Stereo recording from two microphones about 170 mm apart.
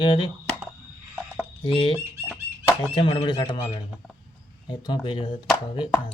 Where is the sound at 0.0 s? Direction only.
30° left (ahead or behind).